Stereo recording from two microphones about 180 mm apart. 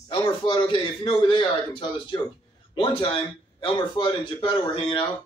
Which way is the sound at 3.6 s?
25° left (ahead or behind).